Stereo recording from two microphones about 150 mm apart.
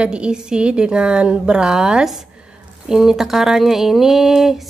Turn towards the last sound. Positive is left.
turn(degrees=0)  # may be behind; listen again after turning